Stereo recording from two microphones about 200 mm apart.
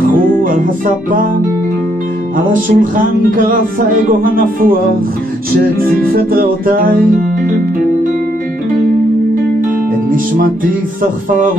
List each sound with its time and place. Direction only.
0.1 s music: 45° right (ahead or behind)
2.3 s music: 40° right (ahead or behind)
5.8 s music: 45° right (ahead or behind)
10.3 s music: 45° right (ahead or behind)